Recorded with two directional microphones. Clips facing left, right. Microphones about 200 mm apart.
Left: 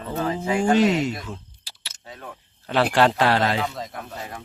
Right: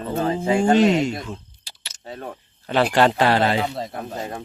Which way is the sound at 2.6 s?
Centre (ahead or behind).